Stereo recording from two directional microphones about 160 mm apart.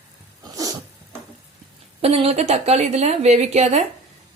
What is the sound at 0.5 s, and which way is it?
Cat, 20° right (ahead or behind).